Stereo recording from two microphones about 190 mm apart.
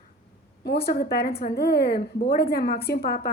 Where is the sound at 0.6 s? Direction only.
55° left (ahead or behind).